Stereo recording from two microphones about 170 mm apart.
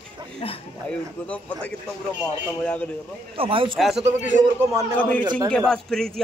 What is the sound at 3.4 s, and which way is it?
Speech, 30° right (ahead or behind).